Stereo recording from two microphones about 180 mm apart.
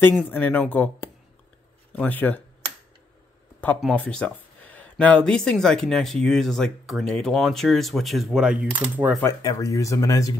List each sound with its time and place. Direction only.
0.3 s speech: 10° left (ahead or behind)
3.8 s speech: 5° left (ahead or behind)
9.2 s speech: 20° left (ahead or behind)